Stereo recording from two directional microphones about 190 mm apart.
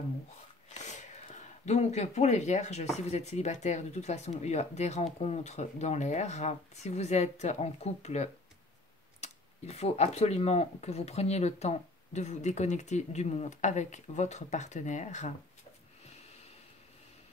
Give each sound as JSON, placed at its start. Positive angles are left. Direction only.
{"t": 0.8, "sound": "a sound", "side_deg": 40}
{"t": 3.1, "sound": "speech", "side_deg": 35}
{"t": 16.1, "sound": "snort", "side_deg": 35}